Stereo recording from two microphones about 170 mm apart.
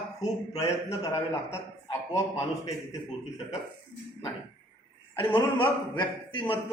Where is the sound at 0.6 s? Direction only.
15° left (ahead or behind).